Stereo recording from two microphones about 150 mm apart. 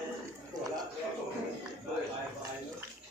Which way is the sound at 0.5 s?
25° right (ahead or behind).